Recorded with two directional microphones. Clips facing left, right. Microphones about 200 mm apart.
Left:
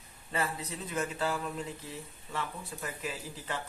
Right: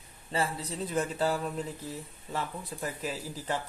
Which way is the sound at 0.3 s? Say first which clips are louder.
Right 3 dB; 30° right (ahead or behind).